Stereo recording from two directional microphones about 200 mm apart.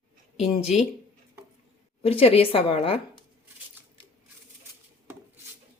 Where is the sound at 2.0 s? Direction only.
30° left (ahead or behind).